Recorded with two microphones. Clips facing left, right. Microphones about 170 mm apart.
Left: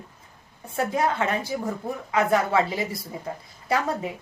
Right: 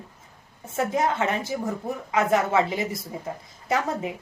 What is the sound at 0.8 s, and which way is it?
A woman's voice, 20° right (ahead or behind).